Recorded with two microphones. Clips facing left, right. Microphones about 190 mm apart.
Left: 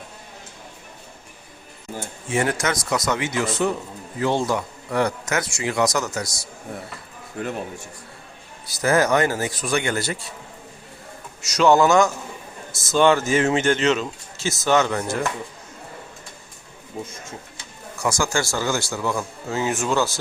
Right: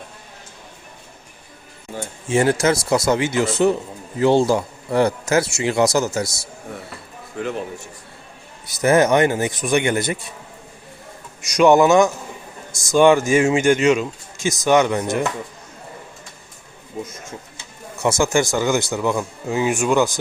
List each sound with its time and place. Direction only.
2.3 s a man's voice: 30° right (ahead or behind)
8.6 s a man's voice: 20° right (ahead or behind)
11.4 s a man's voice: 15° right (ahead or behind)
18.0 s speech: 20° right (ahead or behind)